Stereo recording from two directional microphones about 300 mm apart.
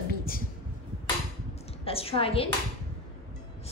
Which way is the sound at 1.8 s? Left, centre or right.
Centre.